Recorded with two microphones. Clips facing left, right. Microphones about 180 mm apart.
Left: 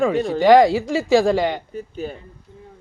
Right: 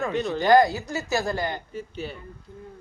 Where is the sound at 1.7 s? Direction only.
45° left (ahead or behind).